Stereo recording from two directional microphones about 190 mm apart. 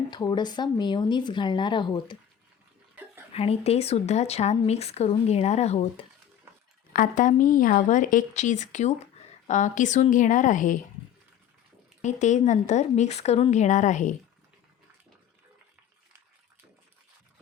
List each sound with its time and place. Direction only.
0.1 s speech: 25° left (ahead or behind)
3.3 s speech: 30° left (ahead or behind)
6.9 s speech: 45° left (ahead or behind)
12.0 s speech: 40° left (ahead or behind)